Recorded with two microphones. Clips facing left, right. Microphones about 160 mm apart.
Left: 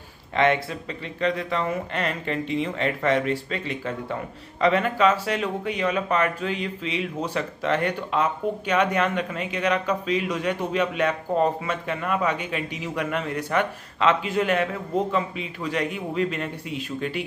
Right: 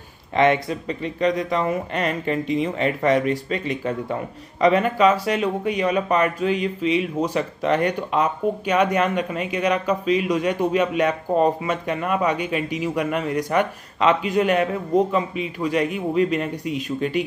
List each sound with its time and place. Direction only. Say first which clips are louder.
0.4 s speech: right 3 dB; 15° right (ahead or behind)